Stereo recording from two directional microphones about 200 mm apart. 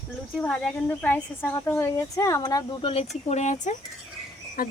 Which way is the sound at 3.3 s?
35° left (ahead or behind).